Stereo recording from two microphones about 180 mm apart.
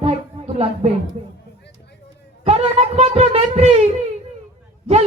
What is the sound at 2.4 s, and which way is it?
Speech, 35° right (ahead or behind).